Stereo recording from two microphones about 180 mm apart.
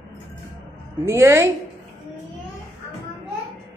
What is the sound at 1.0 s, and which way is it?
Speech, 15° right (ahead or behind).